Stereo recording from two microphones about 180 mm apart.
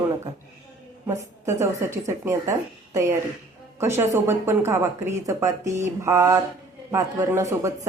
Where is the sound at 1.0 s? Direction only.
15° right (ahead or behind).